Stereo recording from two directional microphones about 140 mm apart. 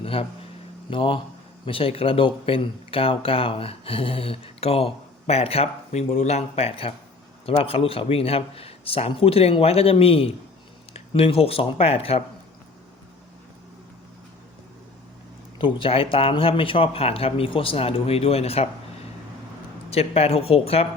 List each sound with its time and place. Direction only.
0.0 s a sound: 40° left (ahead or behind)
0.9 s a man's voice: 40° left (ahead or behind)
15.5 s speech: 40° left (ahead or behind)
19.9 s a man's voice: 45° left (ahead or behind)